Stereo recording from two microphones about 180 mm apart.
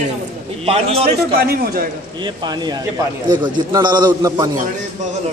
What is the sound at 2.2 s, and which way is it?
A man's voice, 25° right (ahead or behind).